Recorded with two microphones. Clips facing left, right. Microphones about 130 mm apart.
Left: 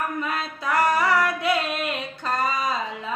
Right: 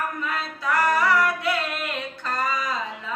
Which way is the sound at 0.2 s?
20° left (ahead or behind).